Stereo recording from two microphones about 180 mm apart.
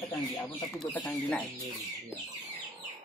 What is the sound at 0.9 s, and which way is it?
Speech, 10° left (ahead or behind).